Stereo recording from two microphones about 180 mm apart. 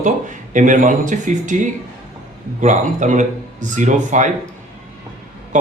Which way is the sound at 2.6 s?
45° right (ahead or behind).